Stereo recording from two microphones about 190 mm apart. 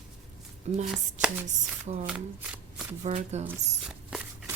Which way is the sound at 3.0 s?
35° right (ahead or behind).